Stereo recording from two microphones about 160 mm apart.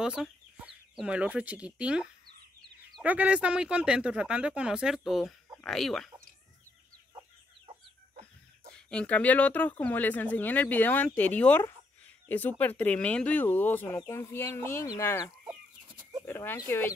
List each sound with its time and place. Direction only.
0.0 s speech: 5° right (ahead or behind)
8.7 s speech: 5° left (ahead or behind)
16.0 s bird: 25° right (ahead or behind)
16.3 s speech: 15° left (ahead or behind)